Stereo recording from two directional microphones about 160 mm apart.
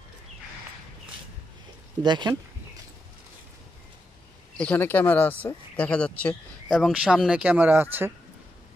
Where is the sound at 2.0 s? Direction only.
25° right (ahead or behind).